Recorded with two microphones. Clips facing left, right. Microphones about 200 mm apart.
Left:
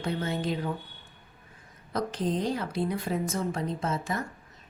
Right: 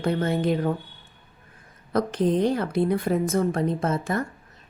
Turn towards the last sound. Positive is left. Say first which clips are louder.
# right 6 dB
turn(degrees=-55)  # may be behind; listen again after turning